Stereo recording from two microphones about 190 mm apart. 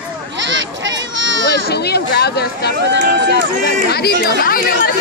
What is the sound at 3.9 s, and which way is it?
Speech, 55° left (ahead or behind).